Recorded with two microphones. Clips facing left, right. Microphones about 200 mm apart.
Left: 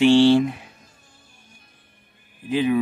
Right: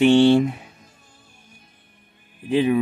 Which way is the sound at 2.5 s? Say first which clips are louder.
Right 2 dB; 30° right (ahead or behind).